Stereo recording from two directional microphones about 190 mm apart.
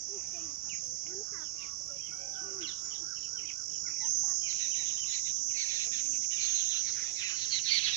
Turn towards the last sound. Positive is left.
turn(degrees=25)  # may be behind; listen again after turning